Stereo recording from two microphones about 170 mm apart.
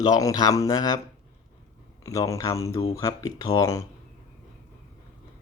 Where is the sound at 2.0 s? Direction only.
20° left (ahead or behind).